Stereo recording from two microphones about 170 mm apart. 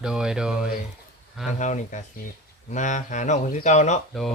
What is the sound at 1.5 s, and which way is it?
Speech, 45° left (ahead or behind).